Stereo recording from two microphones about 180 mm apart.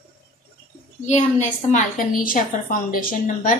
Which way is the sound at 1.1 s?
40° left (ahead or behind).